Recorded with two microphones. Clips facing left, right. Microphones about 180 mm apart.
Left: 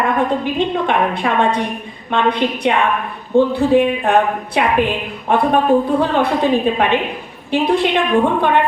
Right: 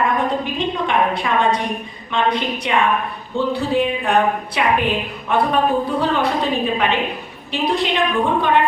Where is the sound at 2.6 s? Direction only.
55° left (ahead or behind).